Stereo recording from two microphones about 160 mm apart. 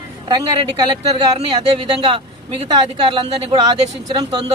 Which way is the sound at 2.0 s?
30° right (ahead or behind).